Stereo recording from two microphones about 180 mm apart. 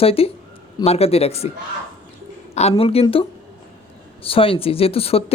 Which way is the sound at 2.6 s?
35° left (ahead or behind).